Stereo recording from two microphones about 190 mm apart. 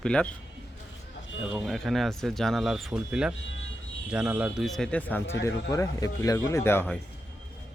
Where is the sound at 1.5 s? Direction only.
Centre (ahead or behind).